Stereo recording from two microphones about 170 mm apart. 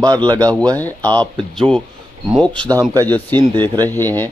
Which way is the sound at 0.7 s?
10° left (ahead or behind).